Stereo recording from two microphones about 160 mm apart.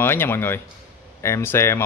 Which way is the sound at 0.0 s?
15° left (ahead or behind).